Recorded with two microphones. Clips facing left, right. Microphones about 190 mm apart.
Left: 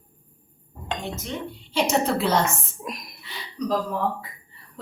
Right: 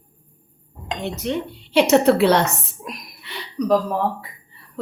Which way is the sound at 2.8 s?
Centre (ahead or behind).